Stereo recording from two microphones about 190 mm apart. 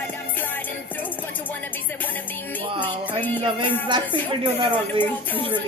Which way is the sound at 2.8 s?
10° left (ahead or behind).